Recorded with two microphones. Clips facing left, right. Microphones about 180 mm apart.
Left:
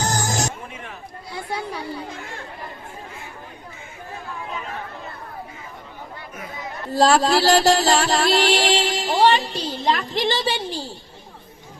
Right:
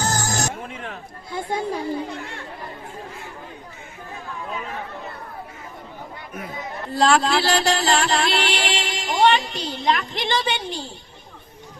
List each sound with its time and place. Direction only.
0.0 s music: 20° left (ahead or behind)
0.9 s speech: 50° right (ahead or behind)
7.2 s music: 40° left (ahead or behind)